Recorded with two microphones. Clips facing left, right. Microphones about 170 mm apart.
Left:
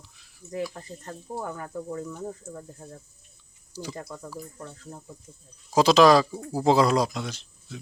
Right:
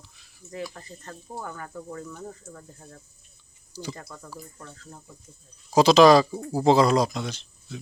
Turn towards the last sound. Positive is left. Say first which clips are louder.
# right 2 dB
turn(degrees=5)  # may be behind; listen again after turning